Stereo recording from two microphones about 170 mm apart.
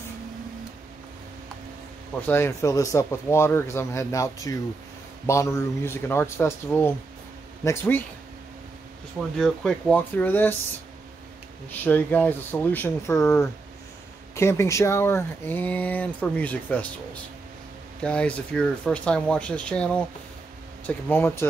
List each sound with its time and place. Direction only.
2.2 s speech: 15° left (ahead or behind)
9.4 s speech: 5° left (ahead or behind)
11.8 s speech: 10° left (ahead or behind)